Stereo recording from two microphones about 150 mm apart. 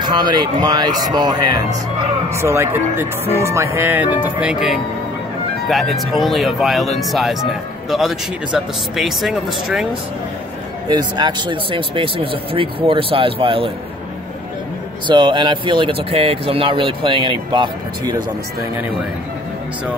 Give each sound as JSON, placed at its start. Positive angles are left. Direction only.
{"t": 0.0, "sound": "speech", "side_deg": -30}
{"t": 2.2, "sound": "speech", "side_deg": -15}
{"t": 10.9, "sound": "speech", "side_deg": -30}
{"t": 15.0, "sound": "speech", "side_deg": -30}